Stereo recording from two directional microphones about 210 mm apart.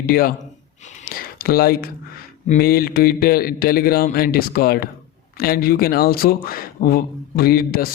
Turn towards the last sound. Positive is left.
turn(degrees=45)  # may be behind; listen again after turning